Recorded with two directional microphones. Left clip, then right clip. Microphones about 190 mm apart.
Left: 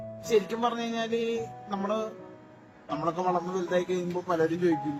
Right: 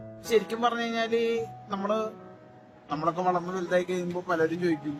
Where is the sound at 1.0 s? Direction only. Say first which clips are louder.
Right 3 dB; 55° right (ahead or behind).